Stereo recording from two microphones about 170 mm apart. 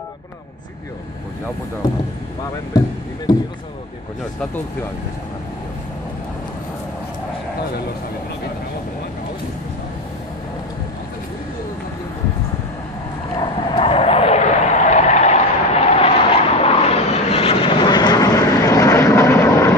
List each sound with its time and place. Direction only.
13.4 s vehicle: 35° left (ahead or behind); by 19.7 s 15° left (ahead or behind)